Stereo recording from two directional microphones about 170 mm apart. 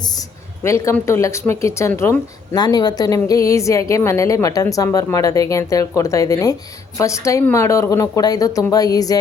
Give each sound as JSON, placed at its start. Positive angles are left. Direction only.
{"t": 0.6, "sound": "speech", "side_deg": 15}